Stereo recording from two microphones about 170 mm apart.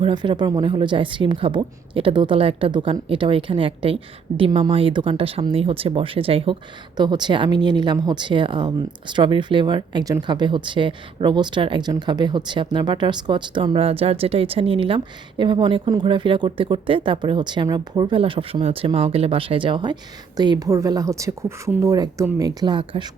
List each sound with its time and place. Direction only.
0.0 s a woman's voice: 25° right (ahead or behind)